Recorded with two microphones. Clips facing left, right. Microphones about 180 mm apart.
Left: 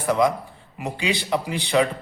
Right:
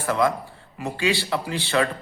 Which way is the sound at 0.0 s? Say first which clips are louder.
Left 2 dB; 15° left (ahead or behind).